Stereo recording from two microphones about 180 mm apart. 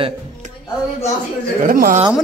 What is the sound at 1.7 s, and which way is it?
Speech, 50° right (ahead or behind).